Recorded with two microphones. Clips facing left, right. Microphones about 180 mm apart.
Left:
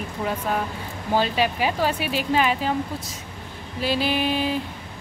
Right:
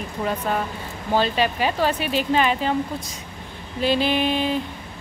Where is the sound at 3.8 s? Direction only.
5° left (ahead or behind).